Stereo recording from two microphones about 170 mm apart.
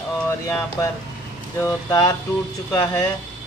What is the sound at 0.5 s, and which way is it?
Speech, 15° left (ahead or behind).